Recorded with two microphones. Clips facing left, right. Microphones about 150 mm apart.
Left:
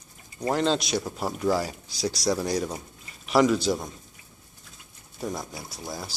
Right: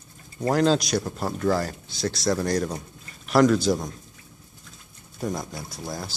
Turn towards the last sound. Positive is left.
turn(degrees=5)  # may be behind; listen again after turning